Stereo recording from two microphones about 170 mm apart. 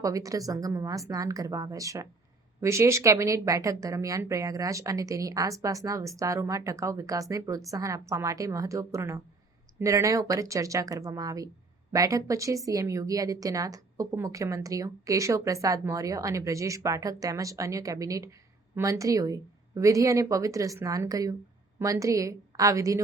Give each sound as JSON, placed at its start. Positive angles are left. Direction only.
{"t": 0.0, "sound": "speech", "side_deg": -20}